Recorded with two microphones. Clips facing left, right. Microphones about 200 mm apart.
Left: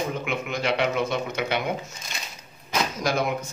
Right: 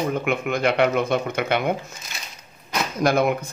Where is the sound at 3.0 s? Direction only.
55° right (ahead or behind).